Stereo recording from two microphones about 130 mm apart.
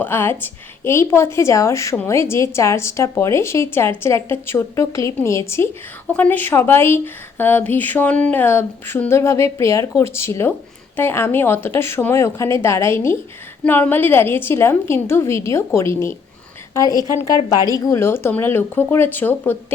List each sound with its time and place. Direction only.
0.0 s a woman's voice: 15° left (ahead or behind)